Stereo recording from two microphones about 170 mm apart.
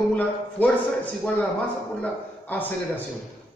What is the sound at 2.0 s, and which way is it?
A man's voice, 10° left (ahead or behind).